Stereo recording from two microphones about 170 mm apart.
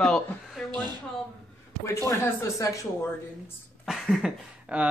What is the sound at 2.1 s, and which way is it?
Speech, 15° left (ahead or behind).